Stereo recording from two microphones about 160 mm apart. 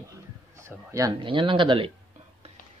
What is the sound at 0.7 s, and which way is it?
Speech, 20° right (ahead or behind).